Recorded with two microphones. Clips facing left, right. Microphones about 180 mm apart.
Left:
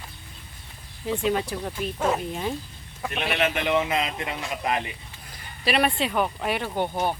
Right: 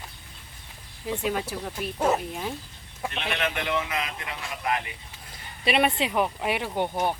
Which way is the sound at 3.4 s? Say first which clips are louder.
Left 5 dB; 25° left (ahead or behind).